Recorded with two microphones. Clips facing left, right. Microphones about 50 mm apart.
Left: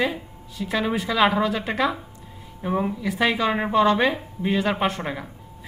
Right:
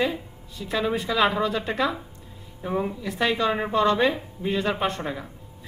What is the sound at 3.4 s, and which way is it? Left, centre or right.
Speech, left.